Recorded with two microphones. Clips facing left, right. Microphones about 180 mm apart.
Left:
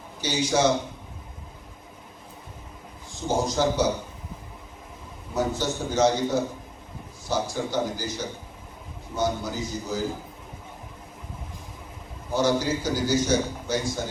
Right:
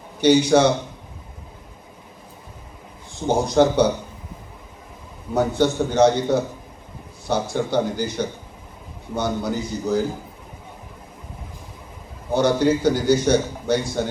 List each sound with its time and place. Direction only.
0.2 s a man's voice: 65° right (ahead or behind)
3.2 s a man's voice: 60° right (ahead or behind)
5.3 s a man's voice: 60° right (ahead or behind)
12.3 s a man's voice: 60° right (ahead or behind)